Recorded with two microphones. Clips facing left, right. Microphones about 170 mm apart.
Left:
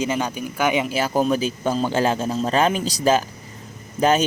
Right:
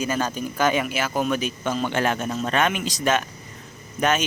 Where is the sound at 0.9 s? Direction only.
35° left (ahead or behind).